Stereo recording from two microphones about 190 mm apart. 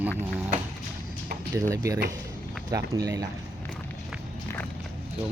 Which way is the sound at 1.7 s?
15° right (ahead or behind).